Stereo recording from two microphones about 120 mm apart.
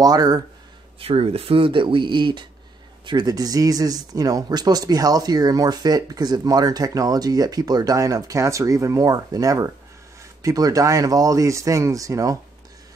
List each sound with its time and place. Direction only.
0.0 s speech: 30° right (ahead or behind)
0.9 s speech: 55° right (ahead or behind); by 12.4 s 25° right (ahead or behind)